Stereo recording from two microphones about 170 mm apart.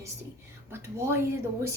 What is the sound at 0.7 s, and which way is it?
Speech, 15° right (ahead or behind).